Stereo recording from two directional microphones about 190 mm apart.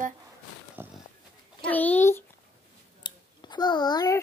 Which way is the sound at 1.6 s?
10° left (ahead or behind).